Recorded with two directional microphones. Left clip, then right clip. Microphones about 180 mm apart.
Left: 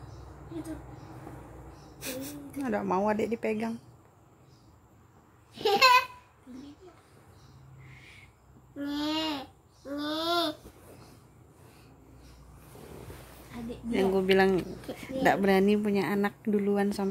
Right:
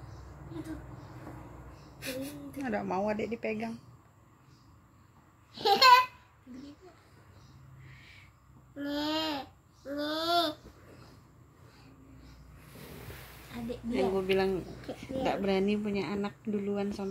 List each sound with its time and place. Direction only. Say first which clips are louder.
2.0 s a woman's voice: even; 25° left (ahead or behind)
5.6 s babbling: right 1 dB; 20° left (ahead or behind)
8.7 s babbling: left 1 dB; 25° left (ahead or behind)
13.9 s speech: left 4 dB; 35° left (ahead or behind)